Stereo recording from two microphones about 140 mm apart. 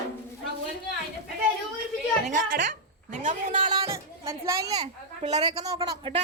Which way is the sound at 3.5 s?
35° right (ahead or behind).